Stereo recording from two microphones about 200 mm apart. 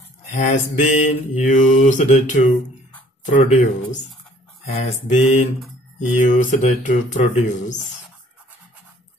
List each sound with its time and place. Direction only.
0.3 s mantra: 40° left (ahead or behind)